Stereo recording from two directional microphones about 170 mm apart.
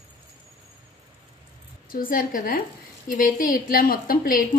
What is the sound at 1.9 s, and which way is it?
A woman's voice, 55° left (ahead or behind).